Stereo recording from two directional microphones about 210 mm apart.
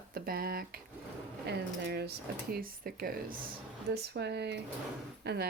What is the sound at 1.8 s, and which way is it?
Speech, 50° right (ahead or behind).